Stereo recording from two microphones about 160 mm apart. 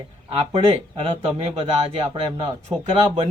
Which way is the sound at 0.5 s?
40° right (ahead or behind).